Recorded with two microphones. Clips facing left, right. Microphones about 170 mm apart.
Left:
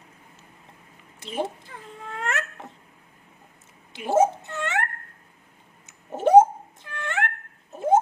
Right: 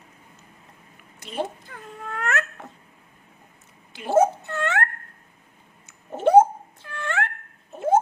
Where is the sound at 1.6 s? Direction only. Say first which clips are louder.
Right 2 dB; 25° left (ahead or behind).